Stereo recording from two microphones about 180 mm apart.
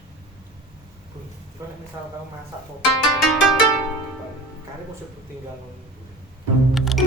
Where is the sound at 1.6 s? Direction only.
15° right (ahead or behind).